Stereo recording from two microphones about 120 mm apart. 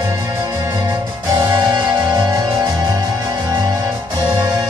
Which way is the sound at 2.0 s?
30° right (ahead or behind).